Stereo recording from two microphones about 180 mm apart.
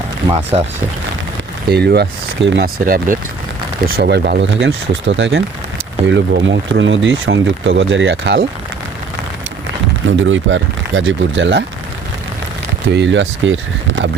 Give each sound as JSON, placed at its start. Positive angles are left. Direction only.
{"t": 0.3, "sound": "speech", "side_deg": -30}
{"t": 1.7, "sound": "speech", "side_deg": -65}
{"t": 4.4, "sound": "speech", "side_deg": -90}
{"t": 6.1, "sound": "speech", "side_deg": -80}
{"t": 10.1, "sound": "speech", "side_deg": -90}
{"t": 12.9, "sound": "speech", "side_deg": -80}